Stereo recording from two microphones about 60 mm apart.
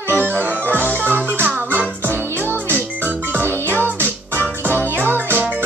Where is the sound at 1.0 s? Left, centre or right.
Right.